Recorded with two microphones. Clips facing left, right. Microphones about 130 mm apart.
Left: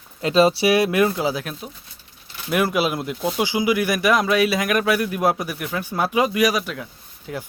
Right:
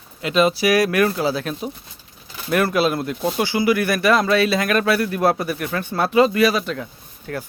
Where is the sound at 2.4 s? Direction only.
15° left (ahead or behind).